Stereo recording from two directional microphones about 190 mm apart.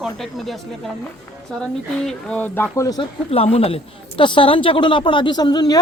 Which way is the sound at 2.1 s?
5° left (ahead or behind).